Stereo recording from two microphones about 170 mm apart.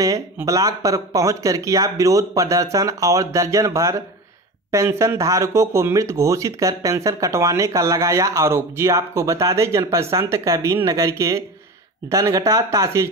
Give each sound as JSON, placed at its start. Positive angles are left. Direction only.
{"t": 0.0, "sound": "speech", "side_deg": -20}